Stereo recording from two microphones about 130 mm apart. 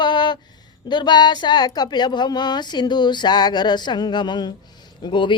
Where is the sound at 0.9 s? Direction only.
35° left (ahead or behind).